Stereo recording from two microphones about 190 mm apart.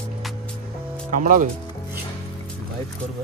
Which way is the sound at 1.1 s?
45° right (ahead or behind).